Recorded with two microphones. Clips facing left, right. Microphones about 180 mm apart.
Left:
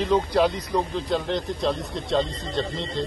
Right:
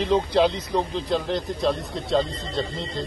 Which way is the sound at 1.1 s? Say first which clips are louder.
Even; centre (ahead or behind).